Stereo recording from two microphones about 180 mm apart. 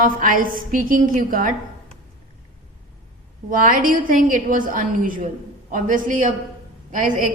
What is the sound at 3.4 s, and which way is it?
A woman's voice, 50° right (ahead or behind).